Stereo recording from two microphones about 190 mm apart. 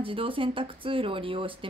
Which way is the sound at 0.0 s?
30° right (ahead or behind).